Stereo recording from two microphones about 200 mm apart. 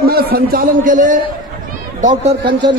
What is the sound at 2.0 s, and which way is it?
Speech, 30° right (ahead or behind).